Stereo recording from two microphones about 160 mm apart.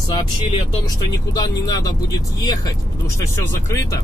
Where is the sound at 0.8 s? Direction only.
25° left (ahead or behind).